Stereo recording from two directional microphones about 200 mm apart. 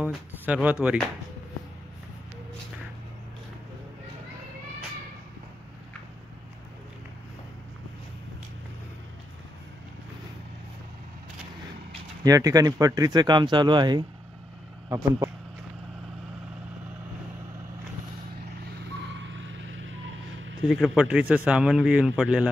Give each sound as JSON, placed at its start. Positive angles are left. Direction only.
{"t": 0.0, "sound": "speech", "side_deg": -5}
{"t": 12.2, "sound": "speech", "side_deg": -15}
{"t": 19.1, "sound": "vehicle", "side_deg": -70}
{"t": 20.6, "sound": "speech", "side_deg": 0}